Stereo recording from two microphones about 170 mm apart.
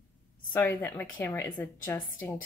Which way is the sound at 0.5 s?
10° left (ahead or behind).